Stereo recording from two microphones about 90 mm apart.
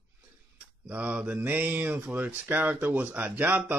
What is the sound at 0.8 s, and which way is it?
Speech, 15° right (ahead or behind).